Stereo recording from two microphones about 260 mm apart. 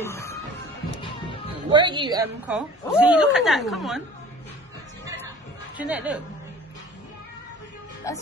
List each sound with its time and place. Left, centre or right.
0.0 s music: centre
1.7 s a woman's voice: centre
2.4 s a woman's voice: centre
5.8 s a woman's voice: centre
8.1 s speech: centre